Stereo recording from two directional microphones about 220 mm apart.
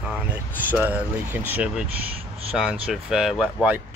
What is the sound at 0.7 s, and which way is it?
Speech, 10° right (ahead or behind).